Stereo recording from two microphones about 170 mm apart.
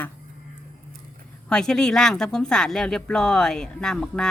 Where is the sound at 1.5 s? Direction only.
5° left (ahead or behind).